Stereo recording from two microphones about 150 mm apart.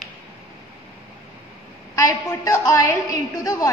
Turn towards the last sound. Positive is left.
turn(degrees=20)  # may be behind; listen again after turning